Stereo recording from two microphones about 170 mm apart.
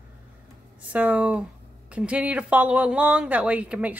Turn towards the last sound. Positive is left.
turn(degrees=-10)  # may be behind; listen again after turning